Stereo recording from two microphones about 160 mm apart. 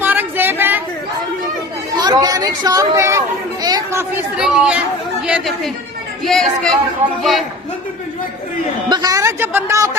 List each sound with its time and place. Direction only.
0.0 s a sound: 15° right (ahead or behind)
2.0 s speech: 25° right (ahead or behind)
4.4 s speech: 5° right (ahead or behind)
8.9 s a man's voice: 25° right (ahead or behind)